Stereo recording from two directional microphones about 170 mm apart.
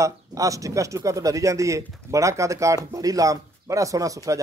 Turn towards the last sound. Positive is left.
turn(degrees=-20)  # may be behind; listen again after turning